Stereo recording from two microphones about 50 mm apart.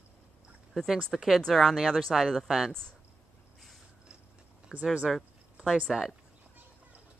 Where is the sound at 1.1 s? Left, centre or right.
Centre.